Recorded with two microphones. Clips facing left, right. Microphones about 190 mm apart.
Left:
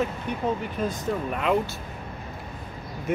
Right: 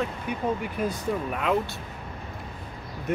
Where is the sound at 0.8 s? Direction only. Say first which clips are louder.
Even; 10° right (ahead or behind).